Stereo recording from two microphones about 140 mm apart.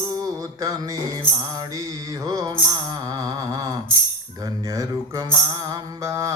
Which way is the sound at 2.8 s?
25° right (ahead or behind).